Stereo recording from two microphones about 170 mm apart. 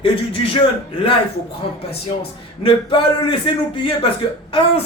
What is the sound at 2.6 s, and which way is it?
A man's voice, 30° left (ahead or behind).